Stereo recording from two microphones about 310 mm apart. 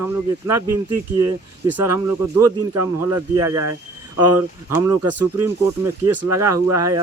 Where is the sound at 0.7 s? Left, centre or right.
Right.